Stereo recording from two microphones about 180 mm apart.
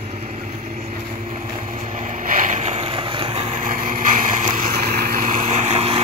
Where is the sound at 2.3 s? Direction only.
45° right (ahead or behind).